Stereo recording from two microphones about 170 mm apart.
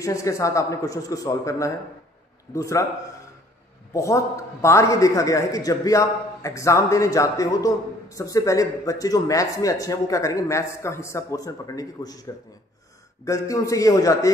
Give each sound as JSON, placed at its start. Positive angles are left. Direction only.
{"t": 0.0, "sound": "a man's voice", "side_deg": 20}
{"t": 3.9, "sound": "a man's voice", "side_deg": 20}
{"t": 13.2, "sound": "a man's voice", "side_deg": 20}